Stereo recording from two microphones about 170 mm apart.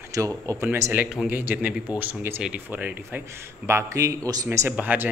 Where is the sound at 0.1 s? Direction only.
20° right (ahead or behind).